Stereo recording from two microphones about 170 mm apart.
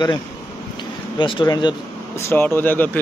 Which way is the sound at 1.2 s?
25° left (ahead or behind).